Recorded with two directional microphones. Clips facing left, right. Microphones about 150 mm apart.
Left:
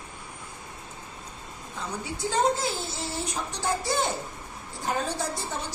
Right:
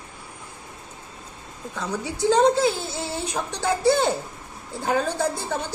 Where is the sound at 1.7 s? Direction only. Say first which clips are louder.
Right 6 dB; 75° right (ahead or behind).